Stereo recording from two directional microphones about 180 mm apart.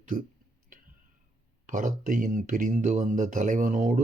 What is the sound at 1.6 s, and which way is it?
Speech, 45° right (ahead or behind).